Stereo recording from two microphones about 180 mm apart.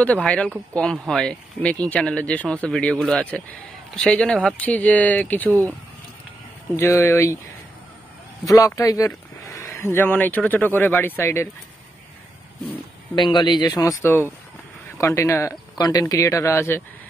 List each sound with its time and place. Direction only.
0.0 s speech: 5° left (ahead or behind)
6.8 s speech: 15° left (ahead or behind)
8.5 s speech: 15° left (ahead or behind)
13.1 s speech: 25° left (ahead or behind)